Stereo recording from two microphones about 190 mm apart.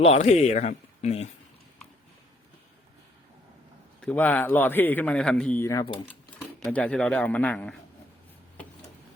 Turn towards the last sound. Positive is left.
turn(degrees=5)  # may be behind; listen again after turning